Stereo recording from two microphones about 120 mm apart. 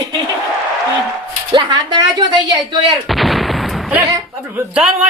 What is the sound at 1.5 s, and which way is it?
A woman's voice, 40° right (ahead or behind).